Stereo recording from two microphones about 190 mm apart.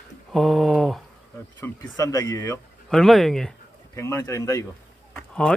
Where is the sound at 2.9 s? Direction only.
Centre (ahead or behind).